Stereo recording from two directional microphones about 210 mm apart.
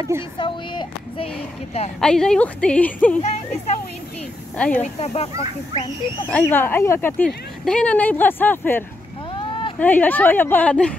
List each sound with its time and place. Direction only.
0.4 s a woman's voice: 25° left (ahead or behind)
2.0 s a woman's voice: 5° left (ahead or behind)
4.6 s a woman's voice: 5° left (ahead or behind)
4.8 s a woman's voice: 30° left (ahead or behind)
6.3 s speech: 10° left (ahead or behind)
9.3 s a sound: 25° left (ahead or behind)
9.8 s speech: 10° left (ahead or behind)